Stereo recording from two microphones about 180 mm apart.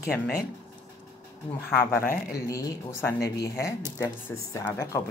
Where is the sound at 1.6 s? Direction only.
10° left (ahead or behind).